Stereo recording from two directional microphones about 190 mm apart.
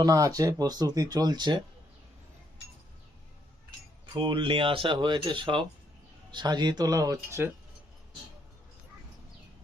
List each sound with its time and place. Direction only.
0.0 s speech: 20° right (ahead or behind)
4.0 s speech: 25° right (ahead or behind)